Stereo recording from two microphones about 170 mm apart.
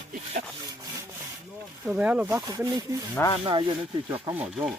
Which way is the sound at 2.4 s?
20° right (ahead or behind).